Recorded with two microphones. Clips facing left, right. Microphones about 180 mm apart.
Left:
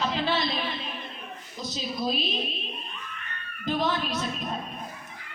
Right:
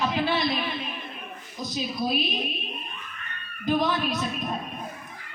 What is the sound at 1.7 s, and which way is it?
Speech, 15° right (ahead or behind).